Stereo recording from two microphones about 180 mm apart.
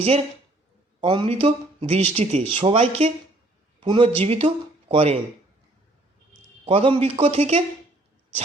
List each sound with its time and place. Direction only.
1.0 s speech: 30° right (ahead or behind)
6.7 s speech: 30° right (ahead or behind)